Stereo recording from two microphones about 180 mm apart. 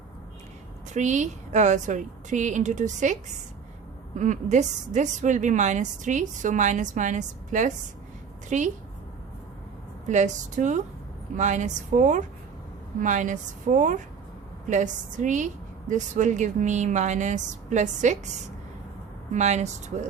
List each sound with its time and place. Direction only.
0.9 s a woman's voice: 40° right (ahead or behind)
10.1 s a woman's voice: 40° right (ahead or behind)